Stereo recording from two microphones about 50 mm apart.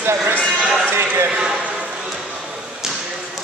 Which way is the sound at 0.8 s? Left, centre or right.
Right.